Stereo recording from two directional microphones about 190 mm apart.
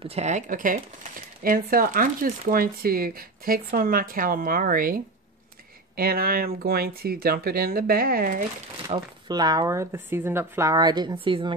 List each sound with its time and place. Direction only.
0.0 s speech: 35° right (ahead or behind)
8.8 s speech: 20° right (ahead or behind)